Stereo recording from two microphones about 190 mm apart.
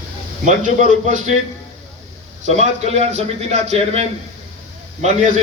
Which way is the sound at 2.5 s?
35° right (ahead or behind).